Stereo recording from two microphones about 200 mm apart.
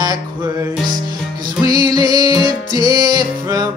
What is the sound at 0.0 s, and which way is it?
Music, 20° right (ahead or behind).